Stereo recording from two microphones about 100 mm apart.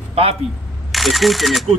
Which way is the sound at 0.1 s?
85° right.